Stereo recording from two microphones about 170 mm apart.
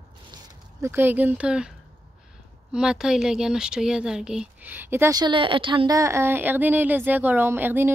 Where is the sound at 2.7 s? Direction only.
5° right (ahead or behind).